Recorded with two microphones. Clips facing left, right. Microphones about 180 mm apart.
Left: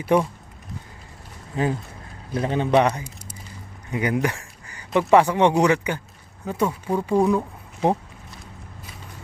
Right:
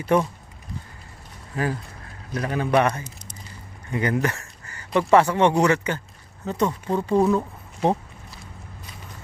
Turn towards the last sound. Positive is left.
turn(degrees=10)  # may be behind; listen again after turning